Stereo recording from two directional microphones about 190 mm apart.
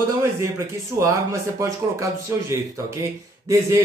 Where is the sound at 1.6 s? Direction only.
15° right (ahead or behind).